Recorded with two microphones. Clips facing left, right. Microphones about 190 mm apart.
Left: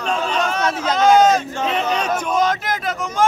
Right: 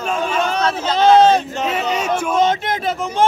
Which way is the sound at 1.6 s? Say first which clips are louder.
Even; 5° right (ahead or behind).